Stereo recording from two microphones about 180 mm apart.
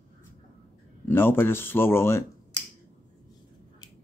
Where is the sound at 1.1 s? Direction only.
10° left (ahead or behind).